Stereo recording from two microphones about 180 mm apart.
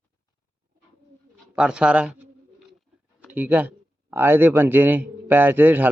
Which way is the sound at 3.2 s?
10° right (ahead or behind).